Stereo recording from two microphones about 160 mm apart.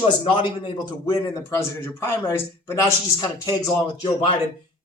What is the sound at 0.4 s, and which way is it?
A man's voice, 30° left (ahead or behind).